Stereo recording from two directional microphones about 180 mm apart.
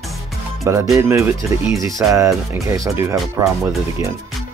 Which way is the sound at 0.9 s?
15° right (ahead or behind).